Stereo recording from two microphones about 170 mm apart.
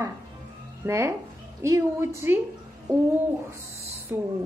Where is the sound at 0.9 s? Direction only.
15° right (ahead or behind).